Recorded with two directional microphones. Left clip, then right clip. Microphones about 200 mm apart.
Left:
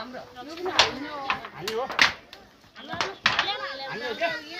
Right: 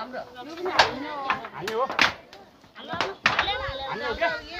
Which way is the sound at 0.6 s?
35° right (ahead or behind).